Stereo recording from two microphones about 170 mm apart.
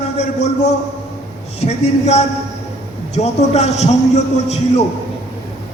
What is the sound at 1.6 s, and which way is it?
A man's voice, 40° left (ahead or behind).